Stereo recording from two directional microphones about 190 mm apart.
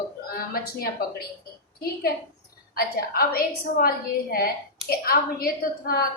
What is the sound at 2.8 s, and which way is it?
A woman's voice, 50° left (ahead or behind).